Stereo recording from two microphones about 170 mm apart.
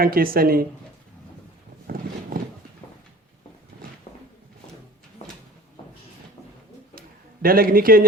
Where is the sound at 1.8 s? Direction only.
55° right (ahead or behind).